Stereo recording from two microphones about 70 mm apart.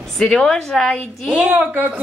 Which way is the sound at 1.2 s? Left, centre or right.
Centre.